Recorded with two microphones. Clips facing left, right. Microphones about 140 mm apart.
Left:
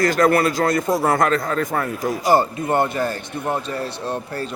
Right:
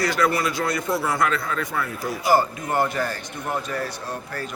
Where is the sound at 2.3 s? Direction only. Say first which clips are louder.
Left 2 dB; 25° left (ahead or behind).